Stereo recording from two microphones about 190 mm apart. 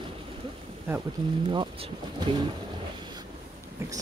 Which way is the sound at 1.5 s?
25° right (ahead or behind).